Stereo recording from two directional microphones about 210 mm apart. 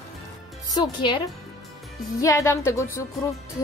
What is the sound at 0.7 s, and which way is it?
Speech, 20° left (ahead or behind).